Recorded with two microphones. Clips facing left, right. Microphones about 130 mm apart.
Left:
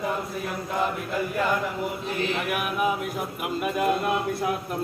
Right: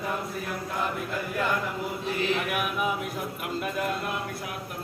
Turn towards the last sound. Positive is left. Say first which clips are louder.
# left 5 dB
turn(degrees=15)  # may be behind; listen again after turning